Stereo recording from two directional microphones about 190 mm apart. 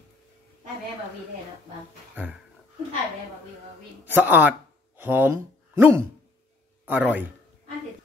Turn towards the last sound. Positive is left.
turn(degrees=-10)  # may be behind; listen again after turning